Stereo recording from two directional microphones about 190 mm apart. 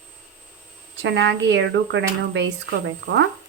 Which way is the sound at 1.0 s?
65° right (ahead or behind).